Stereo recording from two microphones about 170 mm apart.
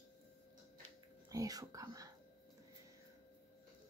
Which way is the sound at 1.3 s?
20° right (ahead or behind).